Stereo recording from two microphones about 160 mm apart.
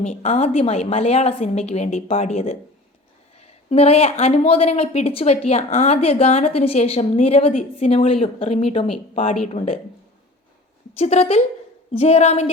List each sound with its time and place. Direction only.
0.0 s a woman's voice: 45° left (ahead or behind)
10.9 s a woman's voice: 40° left (ahead or behind)